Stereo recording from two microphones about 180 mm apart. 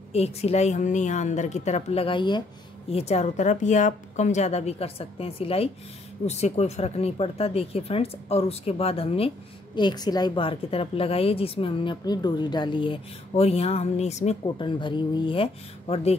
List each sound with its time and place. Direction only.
0.1 s a woman's voice: 35° left (ahead or behind)
14.4 s a woman's voice: 25° left (ahead or behind)